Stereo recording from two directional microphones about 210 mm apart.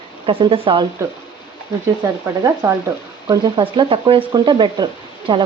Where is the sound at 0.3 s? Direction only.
25° right (ahead or behind).